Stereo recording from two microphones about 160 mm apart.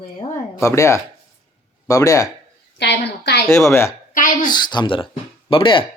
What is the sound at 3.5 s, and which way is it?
Speech, 15° left (ahead or behind).